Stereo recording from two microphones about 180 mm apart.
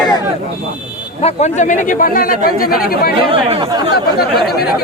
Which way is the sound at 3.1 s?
30° right (ahead or behind).